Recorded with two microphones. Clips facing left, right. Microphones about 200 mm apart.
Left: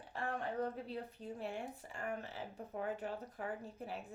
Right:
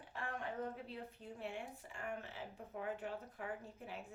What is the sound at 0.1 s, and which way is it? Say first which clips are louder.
Speech: left 4 dB; 35° left (ahead or behind).